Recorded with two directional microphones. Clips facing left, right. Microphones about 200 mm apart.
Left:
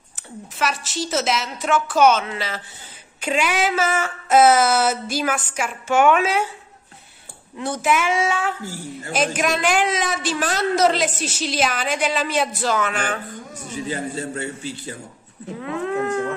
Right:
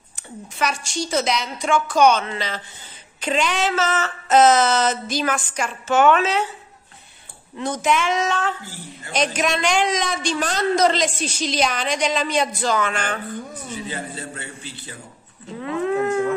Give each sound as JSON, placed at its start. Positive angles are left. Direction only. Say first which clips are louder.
{"t": 0.6, "sound": "a woman's voice", "louder": "even", "side_deg": 5}
{"t": 7.5, "sound": "a woman's voice", "louder": "even", "side_deg": 5}
{"t": 13.7, "sound": "a man's voice", "louder": "left 7 dB", "side_deg": 45}
{"t": 15.6, "sound": "a woman's voice", "louder": "right 2 dB", "side_deg": 0}